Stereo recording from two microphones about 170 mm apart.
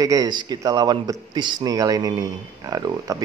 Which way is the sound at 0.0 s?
20° right (ahead or behind).